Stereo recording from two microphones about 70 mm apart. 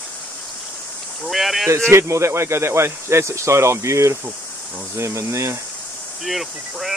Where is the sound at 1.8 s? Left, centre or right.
Right.